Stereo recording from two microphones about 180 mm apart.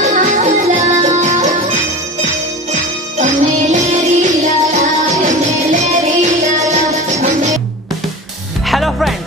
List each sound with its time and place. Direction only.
0.0 s music: 45° right (ahead or behind)
8.6 s music: centre (ahead or behind)